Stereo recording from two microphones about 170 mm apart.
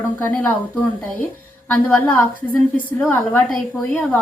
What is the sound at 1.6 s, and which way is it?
A woman's voice, 5° left (ahead or behind).